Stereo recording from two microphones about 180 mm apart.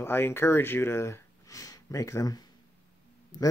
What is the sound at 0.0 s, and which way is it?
Speech, 15° left (ahead or behind).